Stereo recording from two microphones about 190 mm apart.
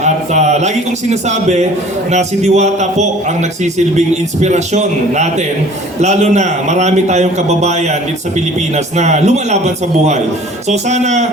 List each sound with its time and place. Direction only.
0.0 s a man's voice: 35° right (ahead or behind)